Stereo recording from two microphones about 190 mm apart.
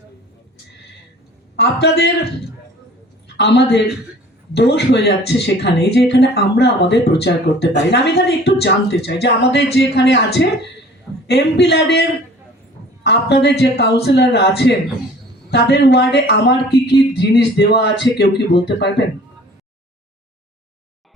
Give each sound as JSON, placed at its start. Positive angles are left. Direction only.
{"t": 1.5, "sound": "speech", "side_deg": 60}
{"t": 3.3, "sound": "speech", "side_deg": 60}
{"t": 13.1, "sound": "speech", "side_deg": 60}